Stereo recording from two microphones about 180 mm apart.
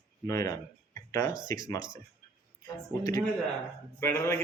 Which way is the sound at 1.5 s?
20° left (ahead or behind).